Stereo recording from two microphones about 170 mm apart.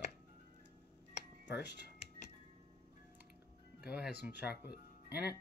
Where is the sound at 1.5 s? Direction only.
90° left.